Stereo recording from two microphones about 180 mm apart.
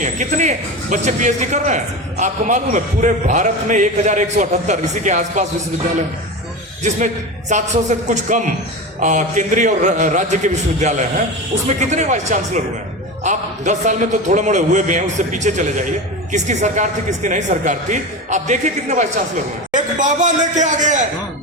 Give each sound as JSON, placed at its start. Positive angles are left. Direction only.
{"t": 0.0, "sound": "a man's voice", "side_deg": -40}
{"t": 7.5, "sound": "a man's voice", "side_deg": -40}